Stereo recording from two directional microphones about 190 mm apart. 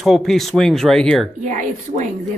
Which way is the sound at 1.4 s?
40° right (ahead or behind).